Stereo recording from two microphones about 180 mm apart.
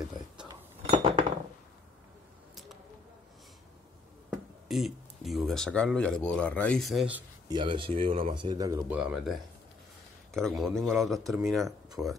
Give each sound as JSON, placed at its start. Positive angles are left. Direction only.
{"t": 0.5, "sound": "cutlery", "side_deg": -25}
{"t": 4.3, "sound": "speech", "side_deg": 0}
{"t": 7.4, "sound": "speech", "side_deg": -25}